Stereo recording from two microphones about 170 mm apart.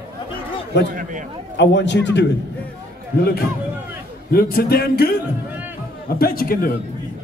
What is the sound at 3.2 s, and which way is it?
Speech, 65° left (ahead or behind).